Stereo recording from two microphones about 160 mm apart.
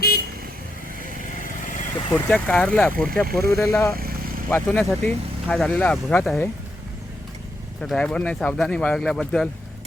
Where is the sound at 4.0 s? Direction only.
65° right (ahead or behind).